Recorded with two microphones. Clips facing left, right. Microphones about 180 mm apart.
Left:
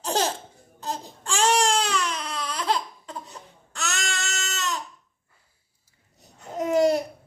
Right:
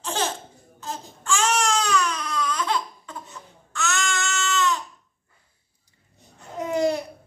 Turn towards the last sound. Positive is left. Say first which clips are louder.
# left 3 dB
turn(degrees=40)  # may be behind; listen again after turning